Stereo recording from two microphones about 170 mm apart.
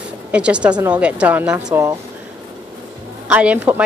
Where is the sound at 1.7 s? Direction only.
20° right (ahead or behind).